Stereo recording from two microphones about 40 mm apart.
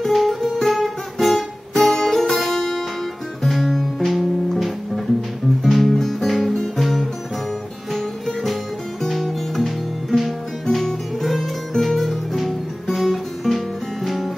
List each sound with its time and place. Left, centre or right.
0.0 s guitar: centre
1.8 s music: centre
3.4 s guitar: centre
4.0 s music: centre
12.9 s guitar: centre
14.0 s music: centre